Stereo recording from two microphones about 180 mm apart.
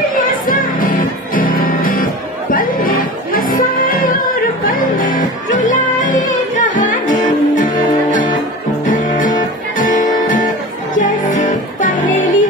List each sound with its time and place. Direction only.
0.2 s music: 50° left (ahead or behind)